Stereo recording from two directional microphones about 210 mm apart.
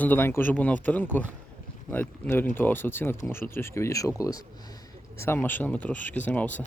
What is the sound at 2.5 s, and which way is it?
Speech, 10° left (ahead or behind).